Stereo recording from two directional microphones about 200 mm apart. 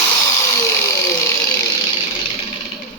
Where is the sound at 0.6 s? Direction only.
15° left (ahead or behind).